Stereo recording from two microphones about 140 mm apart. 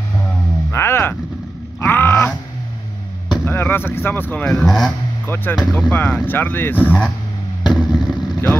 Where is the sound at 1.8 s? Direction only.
15° left (ahead or behind).